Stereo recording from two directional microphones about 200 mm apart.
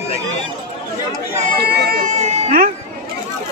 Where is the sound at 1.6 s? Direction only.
50° right (ahead or behind).